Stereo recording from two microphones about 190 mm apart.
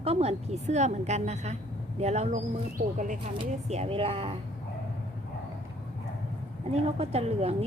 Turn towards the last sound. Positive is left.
turn(degrees=-30)  # may be behind; listen again after turning